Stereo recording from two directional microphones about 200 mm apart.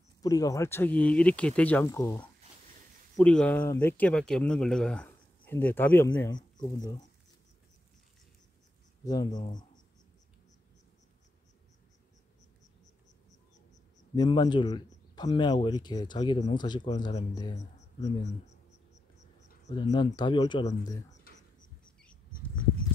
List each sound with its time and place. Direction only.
0.2 s speech: 20° left (ahead or behind)
3.2 s speech: 5° left (ahead or behind); by 7.0 s 20° left (ahead or behind)
9.0 s speech: 20° left (ahead or behind)
14.1 s speech: 20° left (ahead or behind)
19.6 s speech: 25° left (ahead or behind)